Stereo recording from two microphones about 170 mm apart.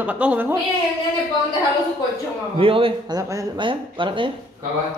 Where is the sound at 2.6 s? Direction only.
30° right (ahead or behind).